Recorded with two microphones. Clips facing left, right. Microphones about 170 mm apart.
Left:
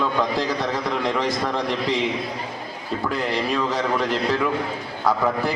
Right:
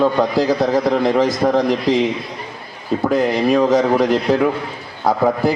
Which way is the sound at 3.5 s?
40° right (ahead or behind).